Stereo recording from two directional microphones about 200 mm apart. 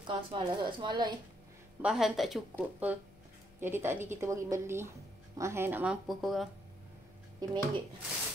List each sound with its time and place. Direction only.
0.0 s speech: 25° right (ahead or behind)
1.8 s a woman's voice: 5° right (ahead or behind)
7.4 s speech: 20° right (ahead or behind)